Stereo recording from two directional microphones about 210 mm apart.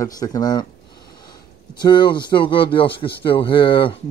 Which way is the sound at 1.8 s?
20° left (ahead or behind).